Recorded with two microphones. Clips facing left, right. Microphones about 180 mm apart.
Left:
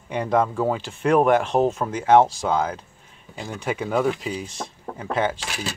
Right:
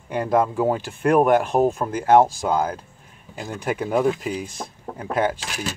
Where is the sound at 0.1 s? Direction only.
5° right (ahead or behind).